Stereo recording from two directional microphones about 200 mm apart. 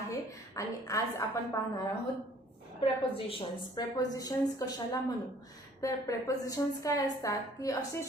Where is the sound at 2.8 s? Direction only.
25° left (ahead or behind).